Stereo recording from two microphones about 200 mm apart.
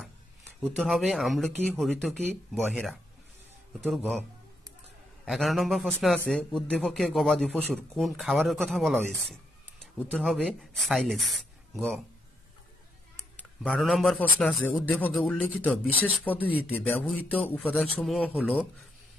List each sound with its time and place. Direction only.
0.7 s a man's voice: centre (ahead or behind)
13.4 s a man's voice: centre (ahead or behind)